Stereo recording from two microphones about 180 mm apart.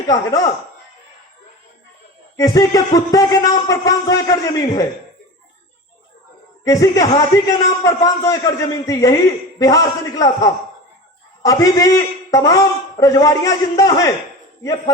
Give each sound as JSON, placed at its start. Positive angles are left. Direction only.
{"t": 0.1, "sound": "a man's voice", "side_deg": 20}
{"t": 2.3, "sound": "a man's voice", "side_deg": 20}
{"t": 6.7, "sound": "a man's voice", "side_deg": 15}